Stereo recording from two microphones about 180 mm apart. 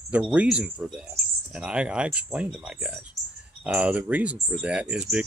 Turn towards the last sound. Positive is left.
turn(degrees=-5)  # may be behind; listen again after turning